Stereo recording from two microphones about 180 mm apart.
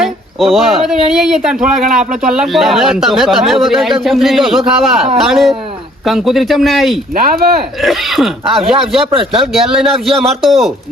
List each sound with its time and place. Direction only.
0.0 s speech: centre (ahead or behind)